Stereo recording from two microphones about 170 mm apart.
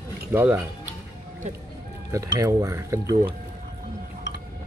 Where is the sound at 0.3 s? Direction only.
10° right (ahead or behind).